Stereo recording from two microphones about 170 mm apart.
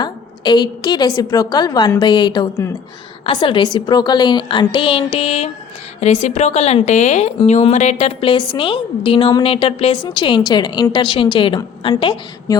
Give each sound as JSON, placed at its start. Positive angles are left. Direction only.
{"t": 0.0, "sound": "a woman's voice", "side_deg": 25}